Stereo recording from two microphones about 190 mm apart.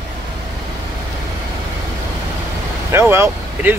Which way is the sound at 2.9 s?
15° right (ahead or behind).